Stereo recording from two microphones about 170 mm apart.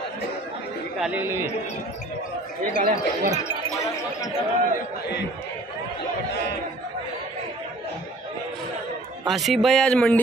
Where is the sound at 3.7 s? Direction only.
20° left (ahead or behind).